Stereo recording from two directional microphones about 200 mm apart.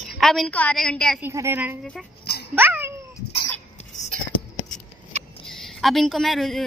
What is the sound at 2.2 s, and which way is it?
Dog, 55° left (ahead or behind).